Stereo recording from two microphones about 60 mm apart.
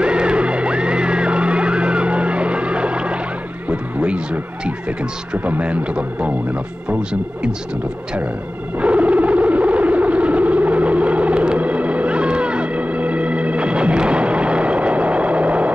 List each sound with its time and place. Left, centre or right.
0.0 s music: centre
3.6 s speech: centre
8.7 s a sound: right